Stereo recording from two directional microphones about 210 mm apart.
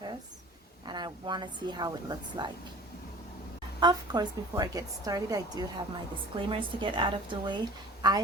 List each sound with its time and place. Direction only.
0.9 s a woman's voice: 20° right (ahead or behind)
3.8 s a woman's voice: 20° right (ahead or behind)